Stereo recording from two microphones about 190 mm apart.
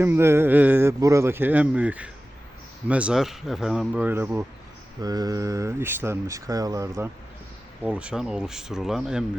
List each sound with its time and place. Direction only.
0.0 s speech: 10° right (ahead or behind)